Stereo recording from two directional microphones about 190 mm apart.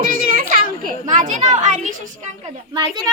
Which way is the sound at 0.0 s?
45° right (ahead or behind).